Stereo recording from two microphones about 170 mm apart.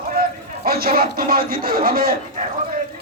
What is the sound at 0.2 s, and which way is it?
A man's voice, 60° right (ahead or behind).